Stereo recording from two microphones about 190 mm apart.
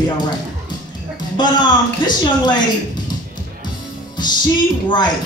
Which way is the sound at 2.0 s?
20° left (ahead or behind).